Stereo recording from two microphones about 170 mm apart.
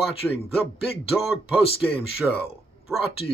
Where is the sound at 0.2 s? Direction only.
Centre (ahead or behind).